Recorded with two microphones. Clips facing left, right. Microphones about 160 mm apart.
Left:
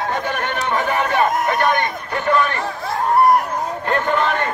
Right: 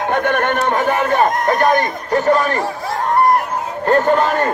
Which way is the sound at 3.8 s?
40° right (ahead or behind).